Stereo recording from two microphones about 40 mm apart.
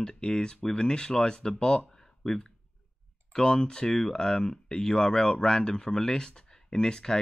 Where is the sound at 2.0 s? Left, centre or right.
Centre.